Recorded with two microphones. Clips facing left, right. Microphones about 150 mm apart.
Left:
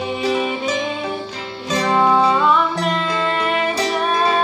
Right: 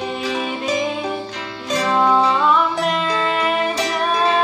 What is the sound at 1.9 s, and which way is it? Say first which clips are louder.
Music: left 1 dB; 5° left (ahead or behind).